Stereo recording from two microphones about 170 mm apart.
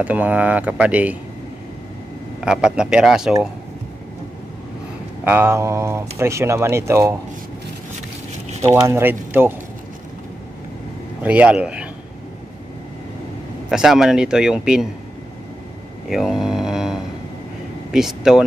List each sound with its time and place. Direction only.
0.0 s speech: 10° right (ahead or behind)
2.4 s a man's voice: 5° right (ahead or behind)
5.2 s speech: 10° right (ahead or behind)
8.5 s a sound: 40° right (ahead or behind)
8.8 s speech: 15° right (ahead or behind)
11.2 s speech: 10° right (ahead or behind)
13.7 s a man's voice: centre (ahead or behind)
16.1 s a man's voice: centre (ahead or behind)